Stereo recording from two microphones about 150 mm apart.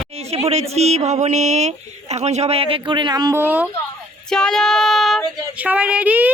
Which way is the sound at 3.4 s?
10° right (ahead or behind).